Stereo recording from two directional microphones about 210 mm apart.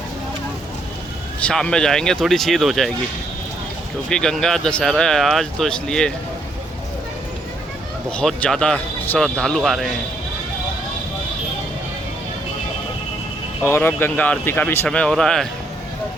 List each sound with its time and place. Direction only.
1.5 s speech: 5° left (ahead or behind)
4.1 s speech: centre (ahead or behind)
8.1 s speech: 5° left (ahead or behind)
13.6 s speech: 10° left (ahead or behind)